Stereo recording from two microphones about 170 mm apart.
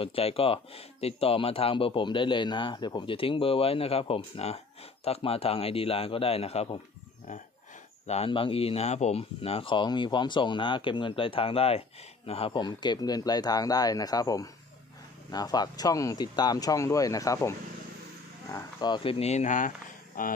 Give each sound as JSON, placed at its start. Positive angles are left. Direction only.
{"t": 0.0, "sound": "speech", "side_deg": 35}
{"t": 8.1, "sound": "speech", "side_deg": 35}